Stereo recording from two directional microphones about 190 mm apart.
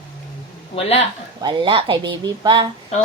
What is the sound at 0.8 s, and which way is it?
Speech, 35° left (ahead or behind).